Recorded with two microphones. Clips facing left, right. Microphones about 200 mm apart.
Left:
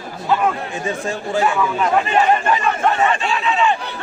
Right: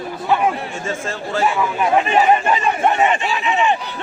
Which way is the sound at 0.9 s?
15° left (ahead or behind).